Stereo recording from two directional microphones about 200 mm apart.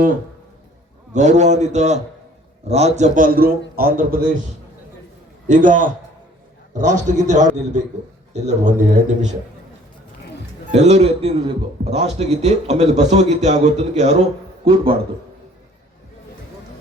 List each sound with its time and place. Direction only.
1.1 s a man's voice: 35° right (ahead or behind)
5.5 s a man's voice: 40° right (ahead or behind)
10.7 s a man's voice: 35° right (ahead or behind)